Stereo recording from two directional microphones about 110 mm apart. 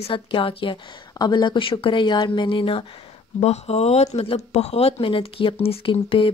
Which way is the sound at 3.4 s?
70° left (ahead or behind).